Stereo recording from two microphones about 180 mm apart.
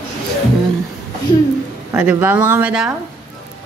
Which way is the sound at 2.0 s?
10° right (ahead or behind).